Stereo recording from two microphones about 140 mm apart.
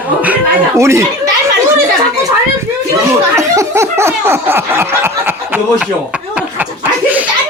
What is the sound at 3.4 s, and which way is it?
Laughter, 20° right (ahead or behind).